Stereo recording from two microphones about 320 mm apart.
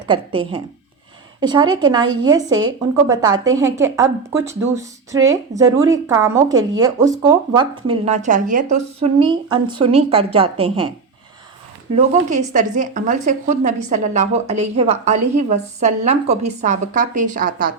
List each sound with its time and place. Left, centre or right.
0.1 s a woman's voice: centre
11.9 s a woman's voice: centre